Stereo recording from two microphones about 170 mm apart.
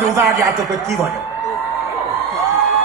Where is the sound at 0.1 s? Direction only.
15° right (ahead or behind).